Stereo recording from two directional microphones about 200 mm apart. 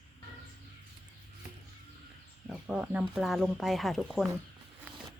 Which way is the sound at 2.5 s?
5° right (ahead or behind).